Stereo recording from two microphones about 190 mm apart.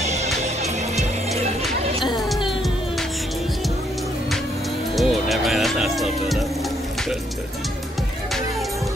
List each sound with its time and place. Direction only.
0.0 s music: 35° right (ahead or behind)
4.9 s music: centre (ahead or behind)